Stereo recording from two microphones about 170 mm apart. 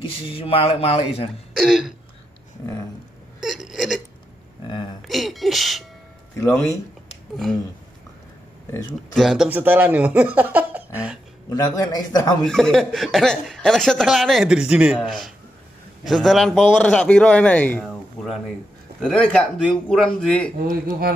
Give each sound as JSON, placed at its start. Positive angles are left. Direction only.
{"t": 0.2, "sound": "speech", "side_deg": 35}
{"t": 1.5, "sound": "speech", "side_deg": 0}
{"t": 3.3, "sound": "a sound", "side_deg": 0}
{"t": 5.0, "sound": "music", "side_deg": 0}
{"t": 6.3, "sound": "speech", "side_deg": 15}
{"t": 9.1, "sound": "speech", "side_deg": 0}
{"t": 11.5, "sound": "speech", "side_deg": 20}
{"t": 12.4, "sound": "speech", "side_deg": 5}
{"t": 17.8, "sound": "a sound", "side_deg": 0}
{"t": 18.9, "sound": "speech", "side_deg": 5}
{"t": 20.6, "sound": "speech", "side_deg": -60}